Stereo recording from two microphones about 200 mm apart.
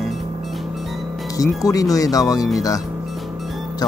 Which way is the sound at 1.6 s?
20° left (ahead or behind).